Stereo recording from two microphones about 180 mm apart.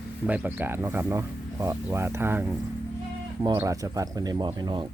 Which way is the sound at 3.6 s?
20° right (ahead or behind).